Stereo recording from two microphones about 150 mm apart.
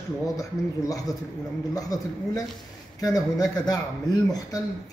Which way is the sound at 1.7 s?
25° left (ahead or behind).